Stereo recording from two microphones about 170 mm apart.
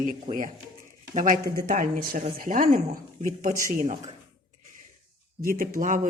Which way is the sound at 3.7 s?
40° right (ahead or behind).